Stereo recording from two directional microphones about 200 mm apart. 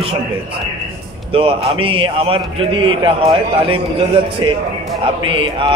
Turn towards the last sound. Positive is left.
turn(degrees=-25)  # may be behind; listen again after turning